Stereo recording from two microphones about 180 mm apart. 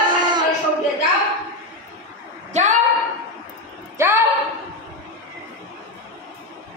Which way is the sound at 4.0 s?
15° right (ahead or behind).